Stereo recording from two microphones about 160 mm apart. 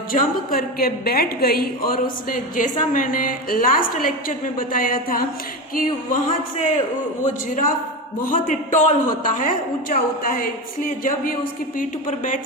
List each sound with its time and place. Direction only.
0.1 s a woman's voice: 65° left (ahead or behind)